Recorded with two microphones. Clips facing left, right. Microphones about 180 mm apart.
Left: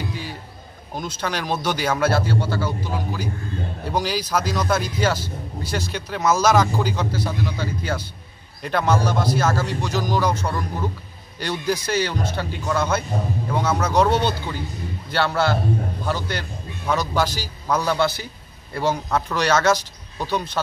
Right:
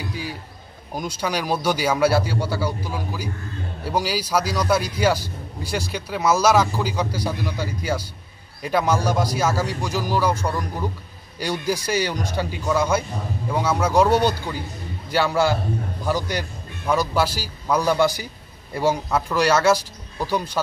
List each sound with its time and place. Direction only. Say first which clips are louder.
0.9 s a man's voice: right 2 dB; 10° right (ahead or behind)